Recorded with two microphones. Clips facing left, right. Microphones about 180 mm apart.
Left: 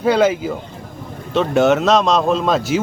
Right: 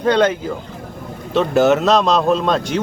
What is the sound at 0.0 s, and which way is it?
Speech, 5° left (ahead or behind).